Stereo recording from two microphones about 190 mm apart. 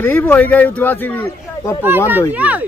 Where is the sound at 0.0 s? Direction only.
10° left (ahead or behind).